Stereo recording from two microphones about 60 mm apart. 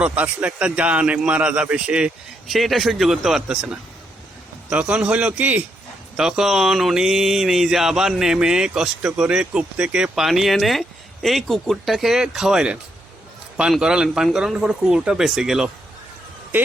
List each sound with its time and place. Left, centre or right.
0.0 s a man's voice: right
2.5 s speech: centre
4.7 s a man's voice: right
6.1 s speech: centre
10.2 s speech: centre